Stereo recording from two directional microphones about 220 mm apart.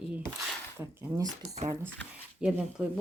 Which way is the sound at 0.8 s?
15° right (ahead or behind).